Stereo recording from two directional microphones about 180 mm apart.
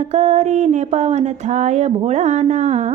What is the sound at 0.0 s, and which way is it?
Music, 40° right (ahead or behind).